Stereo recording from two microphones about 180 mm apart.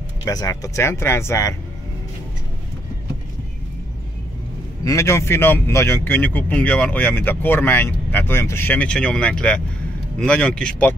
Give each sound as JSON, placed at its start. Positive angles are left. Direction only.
{"t": 0.2, "sound": "speech", "side_deg": 20}
{"t": 4.8, "sound": "speech", "side_deg": 15}